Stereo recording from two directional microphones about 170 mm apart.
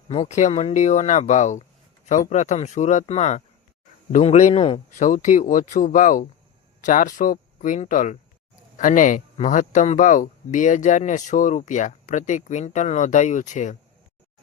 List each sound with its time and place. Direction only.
0.1 s speech: 40° left (ahead or behind)
4.9 s speech: 50° left (ahead or behind)